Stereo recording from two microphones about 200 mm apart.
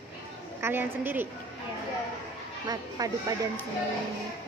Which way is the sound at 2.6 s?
20° right (ahead or behind).